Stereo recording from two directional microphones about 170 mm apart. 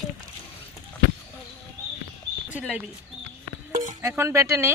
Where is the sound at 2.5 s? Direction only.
5° right (ahead or behind).